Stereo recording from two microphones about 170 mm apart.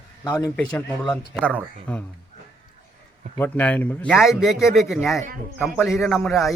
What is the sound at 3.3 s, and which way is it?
A man's voice, 10° left (ahead or behind).